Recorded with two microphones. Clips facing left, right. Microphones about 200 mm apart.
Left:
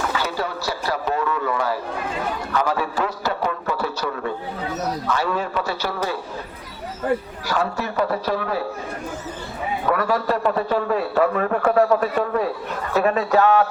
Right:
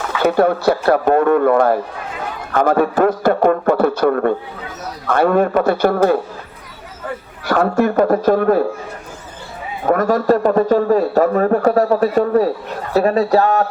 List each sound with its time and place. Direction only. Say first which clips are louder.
0.2 s a man's voice: right 12 dB; 55° right (ahead or behind)
7.4 s a man's voice: right 12 dB; 55° right (ahead or behind)
9.8 s a man's voice: right 7 dB; 45° right (ahead or behind)